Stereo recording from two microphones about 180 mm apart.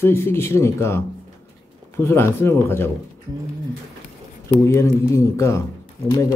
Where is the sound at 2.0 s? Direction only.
15° left (ahead or behind).